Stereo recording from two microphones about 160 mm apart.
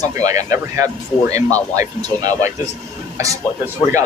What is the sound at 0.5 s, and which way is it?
Speech, 20° right (ahead or behind).